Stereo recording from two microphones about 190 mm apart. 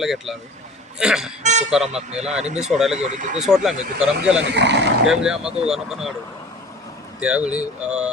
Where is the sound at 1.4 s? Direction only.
40° right (ahead or behind).